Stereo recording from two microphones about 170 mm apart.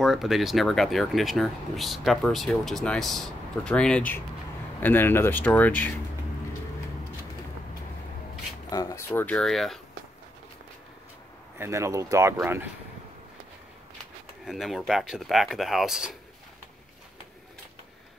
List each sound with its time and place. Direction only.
0.0 s speech: centre (ahead or behind)
8.6 s speech: 20° left (ahead or behind); by 9.8 s centre (ahead or behind)
11.5 s speech: 15° right (ahead or behind)
14.4 s speech: centre (ahead or behind)